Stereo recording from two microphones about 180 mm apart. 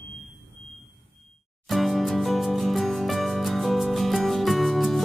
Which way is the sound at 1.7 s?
Centre (ahead or behind).